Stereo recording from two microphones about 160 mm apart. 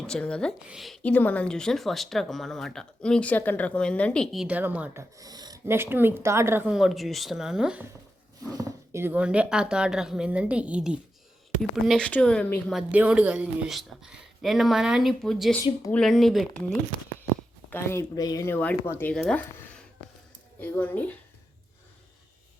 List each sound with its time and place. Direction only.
0.0 s speech: 5° left (ahead or behind)
1.0 s speech: 10° left (ahead or behind); by 5.0 s 10° right (ahead or behind)
5.1 s speech: 25° right (ahead or behind)
6.7 s speech: centre (ahead or behind)
8.4 s speech: 20° right (ahead or behind); by 12.8 s 5° left (ahead or behind)
12.9 s speech: 10° right (ahead or behind)
17.7 s speech: 15° left (ahead or behind)